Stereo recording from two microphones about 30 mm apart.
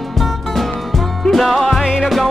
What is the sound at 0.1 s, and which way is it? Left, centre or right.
Music, centre.